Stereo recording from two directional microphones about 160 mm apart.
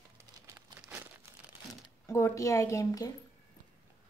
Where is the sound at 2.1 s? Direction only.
20° left (ahead or behind).